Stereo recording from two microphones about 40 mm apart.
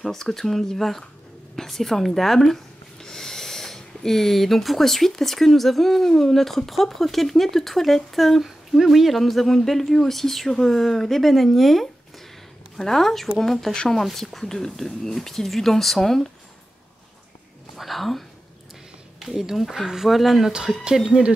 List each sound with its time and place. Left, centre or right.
0.0 s speech: centre
17.7 s a woman's voice: centre
19.1 s speech: centre
21.0 s speech: right